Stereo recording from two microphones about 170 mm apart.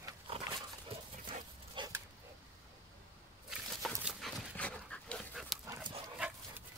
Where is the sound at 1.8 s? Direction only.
30° right (ahead or behind).